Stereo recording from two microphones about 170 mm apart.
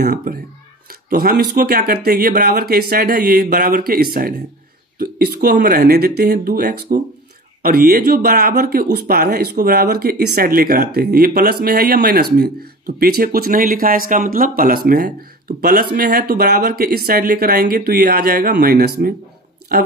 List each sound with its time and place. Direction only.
0.0 s speech: 60° right (ahead or behind)